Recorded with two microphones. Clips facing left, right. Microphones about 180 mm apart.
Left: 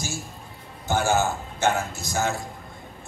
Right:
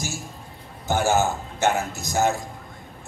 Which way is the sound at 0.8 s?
15° right (ahead or behind).